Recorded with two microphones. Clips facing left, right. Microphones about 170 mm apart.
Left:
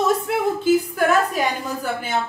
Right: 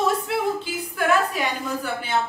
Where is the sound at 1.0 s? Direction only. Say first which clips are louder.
Left 3 dB; 40° left (ahead or behind).